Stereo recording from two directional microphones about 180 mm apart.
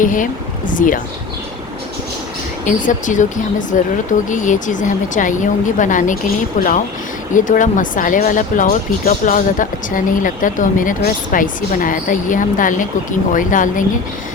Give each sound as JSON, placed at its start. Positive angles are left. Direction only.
{"t": 0.0, "sound": "speech", "side_deg": 45}
{"t": 2.6, "sound": "speech", "side_deg": 45}